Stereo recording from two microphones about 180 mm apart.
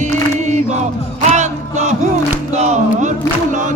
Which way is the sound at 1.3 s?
40° right (ahead or behind).